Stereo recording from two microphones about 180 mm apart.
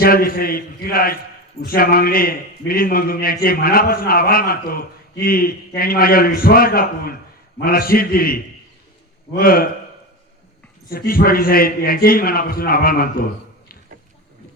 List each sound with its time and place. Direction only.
0.0 s a man's voice: 55° left (ahead or behind)
10.8 s a man's voice: 55° left (ahead or behind)